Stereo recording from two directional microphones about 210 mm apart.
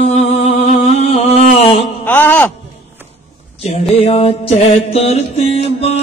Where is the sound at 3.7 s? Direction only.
30° left (ahead or behind).